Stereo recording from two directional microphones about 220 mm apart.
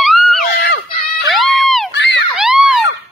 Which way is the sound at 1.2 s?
Centre (ahead or behind).